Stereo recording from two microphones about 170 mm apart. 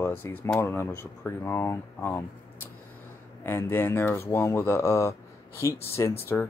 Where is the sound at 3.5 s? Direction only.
10° left (ahead or behind).